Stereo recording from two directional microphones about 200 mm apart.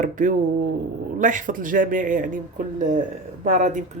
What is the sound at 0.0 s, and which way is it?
Speech, 40° right (ahead or behind).